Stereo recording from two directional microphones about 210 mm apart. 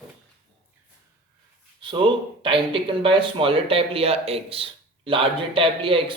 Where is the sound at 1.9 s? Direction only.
25° right (ahead or behind).